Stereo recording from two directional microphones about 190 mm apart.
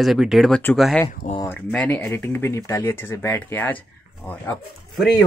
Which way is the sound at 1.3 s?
15° left (ahead or behind).